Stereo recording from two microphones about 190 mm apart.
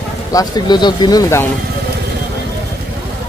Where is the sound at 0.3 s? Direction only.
20° left (ahead or behind).